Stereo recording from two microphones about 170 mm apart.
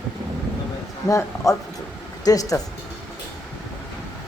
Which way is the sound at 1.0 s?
20° left (ahead or behind).